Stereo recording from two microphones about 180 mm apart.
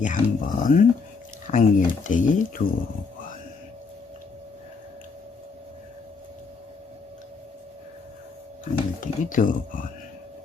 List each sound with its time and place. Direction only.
0.0 s speech: 45° left (ahead or behind)
8.6 s speech: 45° left (ahead or behind)